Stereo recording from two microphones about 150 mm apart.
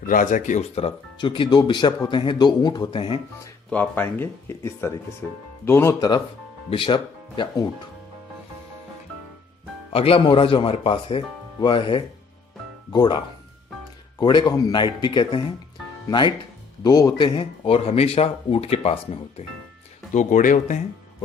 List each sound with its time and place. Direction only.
0.0 s speech: 65° left (ahead or behind); by 3.2 s 35° left (ahead or behind)
3.7 s speech: 10° left (ahead or behind); by 7.7 s 35° left (ahead or behind)
9.9 s speech: 40° left (ahead or behind)
14.2 s speech: 30° left (ahead or behind)
20.1 s speech: 60° left (ahead or behind)